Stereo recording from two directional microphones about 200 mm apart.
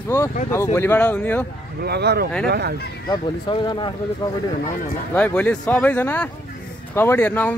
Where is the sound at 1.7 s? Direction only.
55° right (ahead or behind).